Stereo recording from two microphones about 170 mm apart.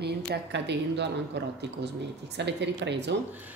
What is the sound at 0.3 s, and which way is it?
A woman's voice, 90° right.